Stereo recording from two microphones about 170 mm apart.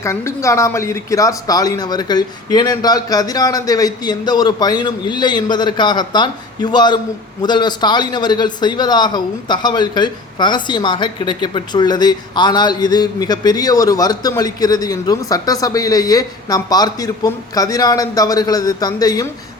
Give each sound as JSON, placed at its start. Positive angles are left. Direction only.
{"t": 0.0, "sound": "a man's voice", "side_deg": 15}